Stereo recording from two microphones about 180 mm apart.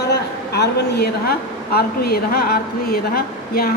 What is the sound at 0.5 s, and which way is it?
A woman's voice, 65° left (ahead or behind).